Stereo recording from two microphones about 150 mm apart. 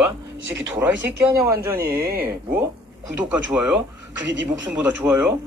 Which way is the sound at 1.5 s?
90° right.